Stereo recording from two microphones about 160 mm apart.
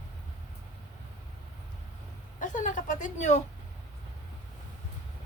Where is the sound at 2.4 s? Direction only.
55° left (ahead or behind).